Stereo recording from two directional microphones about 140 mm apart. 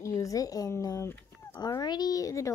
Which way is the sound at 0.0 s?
25° left (ahead or behind).